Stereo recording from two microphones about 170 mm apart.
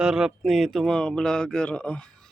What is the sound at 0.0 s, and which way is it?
Speech, 5° right (ahead or behind).